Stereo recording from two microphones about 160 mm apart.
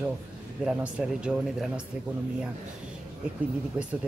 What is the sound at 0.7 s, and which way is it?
Speech, 5° right (ahead or behind).